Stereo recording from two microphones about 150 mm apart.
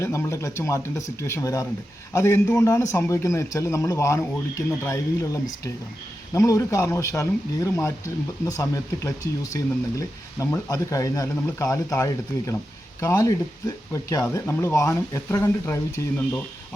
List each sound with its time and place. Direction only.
0.0 s a man's voice: 20° left (ahead or behind)